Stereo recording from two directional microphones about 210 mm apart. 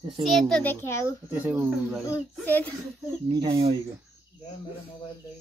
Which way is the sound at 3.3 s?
20° right (ahead or behind).